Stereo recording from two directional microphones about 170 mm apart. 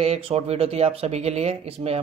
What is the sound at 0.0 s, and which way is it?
Speech, 35° right (ahead or behind).